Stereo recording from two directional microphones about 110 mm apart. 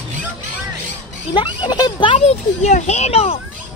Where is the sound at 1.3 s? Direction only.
45° left (ahead or behind).